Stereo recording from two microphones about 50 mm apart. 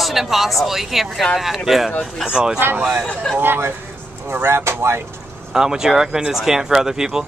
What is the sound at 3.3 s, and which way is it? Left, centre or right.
Speech, right.